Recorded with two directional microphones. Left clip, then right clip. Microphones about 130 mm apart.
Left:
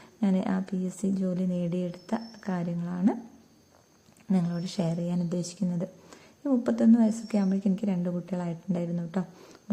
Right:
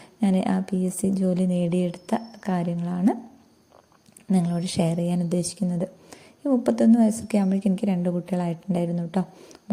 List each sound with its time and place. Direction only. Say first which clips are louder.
0.2 s a woman's voice: right 5 dB; 35° right (ahead or behind)
4.3 s a woman's voice: right 5 dB; 30° right (ahead or behind)